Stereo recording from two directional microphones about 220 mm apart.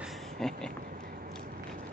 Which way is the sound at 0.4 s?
Centre (ahead or behind).